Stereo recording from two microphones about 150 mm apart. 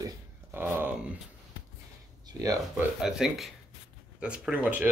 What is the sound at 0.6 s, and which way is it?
Speech, 10° right (ahead or behind).